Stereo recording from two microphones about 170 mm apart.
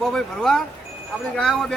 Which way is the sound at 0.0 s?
Centre (ahead or behind).